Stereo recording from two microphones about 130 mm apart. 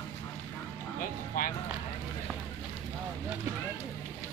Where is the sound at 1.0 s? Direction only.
90° left.